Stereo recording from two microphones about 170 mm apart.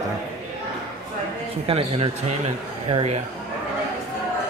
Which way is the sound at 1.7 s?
35° right (ahead or behind).